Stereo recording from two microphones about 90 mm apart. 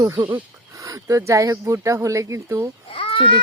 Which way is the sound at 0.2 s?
20° right (ahead or behind).